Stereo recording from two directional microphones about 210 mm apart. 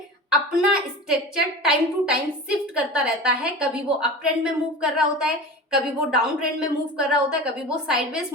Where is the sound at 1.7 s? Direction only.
5° right (ahead or behind).